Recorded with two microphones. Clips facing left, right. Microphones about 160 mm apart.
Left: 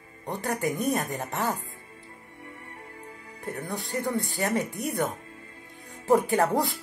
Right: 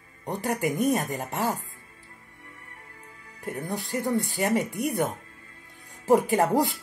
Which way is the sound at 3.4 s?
15° right (ahead or behind).